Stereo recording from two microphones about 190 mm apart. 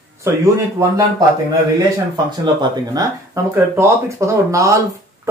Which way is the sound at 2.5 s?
20° right (ahead or behind).